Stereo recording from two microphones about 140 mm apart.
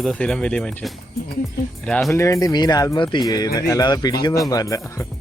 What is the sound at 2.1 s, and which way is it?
Speech, 20° left (ahead or behind).